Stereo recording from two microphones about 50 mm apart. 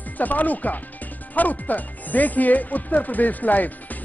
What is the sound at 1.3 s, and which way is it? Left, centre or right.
Speech, left.